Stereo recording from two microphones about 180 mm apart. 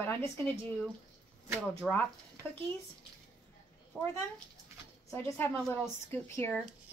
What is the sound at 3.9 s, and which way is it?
Speech, centre (ahead or behind).